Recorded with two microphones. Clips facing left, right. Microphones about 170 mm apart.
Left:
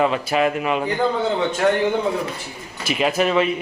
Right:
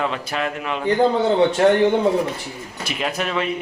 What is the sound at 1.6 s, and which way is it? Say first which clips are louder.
Speech: right 2 dB; 35° right (ahead or behind).